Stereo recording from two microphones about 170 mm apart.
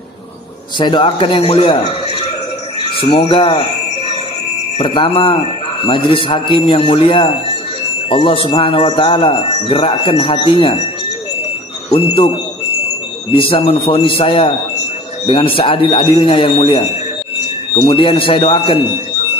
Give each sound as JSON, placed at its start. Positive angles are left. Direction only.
{"t": 0.7, "sound": "speech", "side_deg": 25}
{"t": 4.7, "sound": "speech", "side_deg": 35}
{"t": 11.9, "sound": "speech", "side_deg": 35}
{"t": 13.3, "sound": "speech", "side_deg": 30}